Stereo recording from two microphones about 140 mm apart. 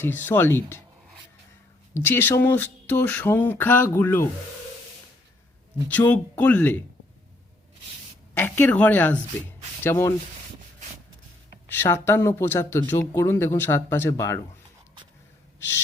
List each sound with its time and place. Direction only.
0.0 s speech: 15° left (ahead or behind)
1.9 s speech: 15° left (ahead or behind)
5.9 s speech: 10° left (ahead or behind)
8.4 s speech: 15° left (ahead or behind)
11.7 s speech: 15° left (ahead or behind)